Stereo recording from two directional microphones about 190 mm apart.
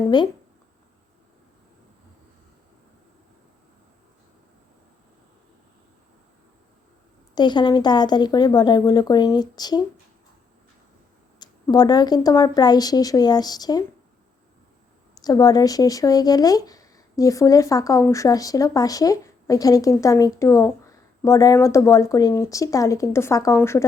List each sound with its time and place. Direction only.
7.3 s speech: 25° left (ahead or behind)
11.3 s speech: 20° left (ahead or behind)
15.1 s speech: 20° left (ahead or behind)